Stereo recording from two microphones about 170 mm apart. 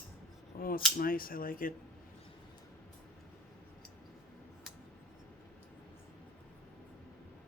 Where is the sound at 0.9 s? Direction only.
60° left (ahead or behind).